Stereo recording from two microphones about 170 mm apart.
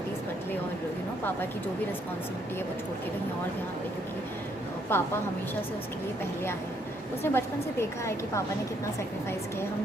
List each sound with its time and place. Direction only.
4.9 s a woman's voice: 10° left (ahead or behind)
7.2 s a woman's voice: 15° left (ahead or behind)